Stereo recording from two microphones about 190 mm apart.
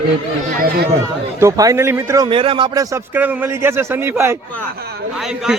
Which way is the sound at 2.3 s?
30° right (ahead or behind).